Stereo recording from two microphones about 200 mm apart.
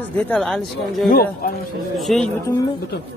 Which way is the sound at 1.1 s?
50° left (ahead or behind).